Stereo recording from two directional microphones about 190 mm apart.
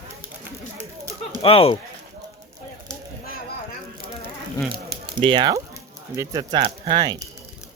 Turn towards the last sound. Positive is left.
turn(degrees=-20)  # may be behind; listen again after turning